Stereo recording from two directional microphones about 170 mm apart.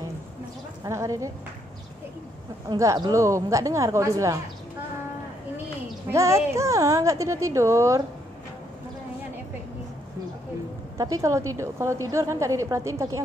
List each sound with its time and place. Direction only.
0.8 s a woman's voice: 20° right (ahead or behind)
2.7 s speech: 20° right (ahead or behind)
6.1 s a woman's voice: 15° right (ahead or behind)
11.0 s a woman's voice: 20° right (ahead or behind)